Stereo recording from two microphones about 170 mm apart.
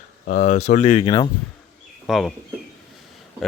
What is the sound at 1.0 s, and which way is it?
Speech, 25° left (ahead or behind).